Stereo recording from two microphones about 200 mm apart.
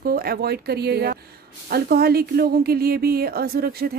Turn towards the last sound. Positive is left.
turn(degrees=-50)  # may be behind; listen again after turning